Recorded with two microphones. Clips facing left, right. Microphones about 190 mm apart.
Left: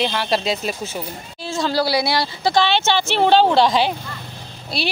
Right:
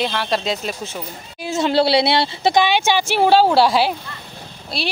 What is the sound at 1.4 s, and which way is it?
Speech, 20° right (ahead or behind).